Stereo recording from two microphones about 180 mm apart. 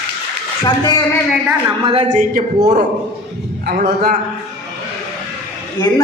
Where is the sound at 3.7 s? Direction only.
55° right (ahead or behind).